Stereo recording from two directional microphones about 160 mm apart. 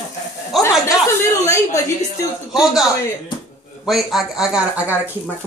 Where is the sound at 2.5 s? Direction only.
5° right (ahead or behind).